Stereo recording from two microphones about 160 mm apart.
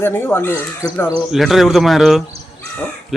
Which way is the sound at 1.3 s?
Centre (ahead or behind).